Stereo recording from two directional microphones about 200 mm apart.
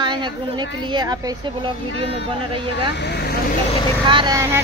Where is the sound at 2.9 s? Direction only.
55° left (ahead or behind).